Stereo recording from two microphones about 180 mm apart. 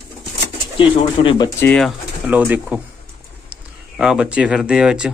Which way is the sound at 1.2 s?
25° left (ahead or behind).